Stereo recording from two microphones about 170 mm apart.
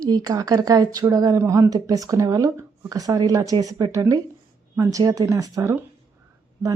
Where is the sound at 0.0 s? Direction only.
20° right (ahead or behind).